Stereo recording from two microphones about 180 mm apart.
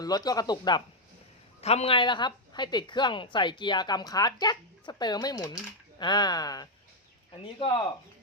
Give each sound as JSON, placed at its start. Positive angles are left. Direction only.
{"t": 0.0, "sound": "a woman's voice", "side_deg": 20}
{"t": 1.6, "sound": "a woman's voice", "side_deg": 35}